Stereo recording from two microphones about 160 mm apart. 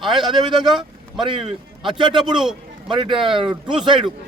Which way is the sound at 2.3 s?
Centre (ahead or behind).